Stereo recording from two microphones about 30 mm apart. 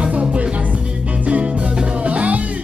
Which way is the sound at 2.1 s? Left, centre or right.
Right.